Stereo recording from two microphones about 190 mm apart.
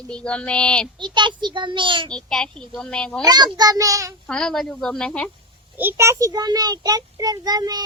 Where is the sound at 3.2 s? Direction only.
20° right (ahead or behind).